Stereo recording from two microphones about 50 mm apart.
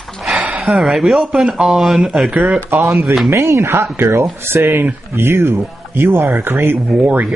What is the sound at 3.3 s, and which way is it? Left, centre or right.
Speech, right.